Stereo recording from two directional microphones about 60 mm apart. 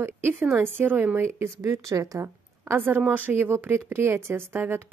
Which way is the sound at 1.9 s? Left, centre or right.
Right.